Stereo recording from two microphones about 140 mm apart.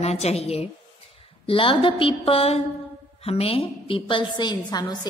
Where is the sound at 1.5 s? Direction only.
35° left (ahead or behind).